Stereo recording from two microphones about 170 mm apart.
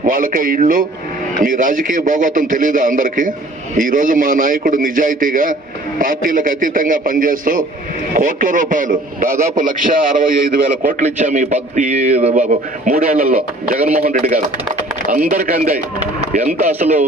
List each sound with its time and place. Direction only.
0.0 s a man's voice: 55° right (ahead or behind)
16.0 s speech: 45° right (ahead or behind)